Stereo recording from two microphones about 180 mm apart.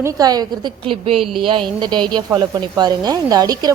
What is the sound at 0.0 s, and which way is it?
A woman's voice, 20° right (ahead or behind).